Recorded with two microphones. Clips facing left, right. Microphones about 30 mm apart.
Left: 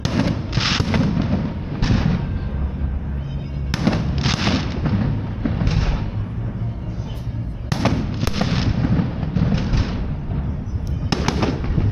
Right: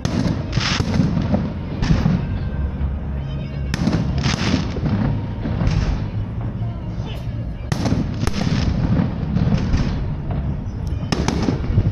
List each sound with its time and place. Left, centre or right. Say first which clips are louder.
0.0 s a sound: even; centre
0.9 s artillery fire: even; centre
1.2 s a sound: right 1 dB; centre
3.7 s fireworks: even; centre
4.9 s artillery fire: right 1 dB; centre
7.9 s fireworks: right 1 dB; centre
9.3 s music: right 1 dB; centre
11.1 s fireworks: even; centre